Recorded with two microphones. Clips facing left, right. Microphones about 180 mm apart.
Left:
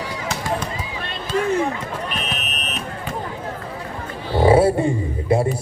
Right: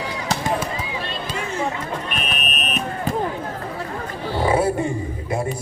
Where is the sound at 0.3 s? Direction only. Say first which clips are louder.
Right 7 dB; 35° right (ahead or behind).